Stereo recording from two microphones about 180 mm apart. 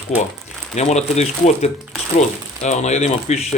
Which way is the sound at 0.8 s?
40° left (ahead or behind).